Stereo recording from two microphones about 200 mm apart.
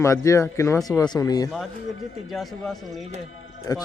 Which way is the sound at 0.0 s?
15° left (ahead or behind).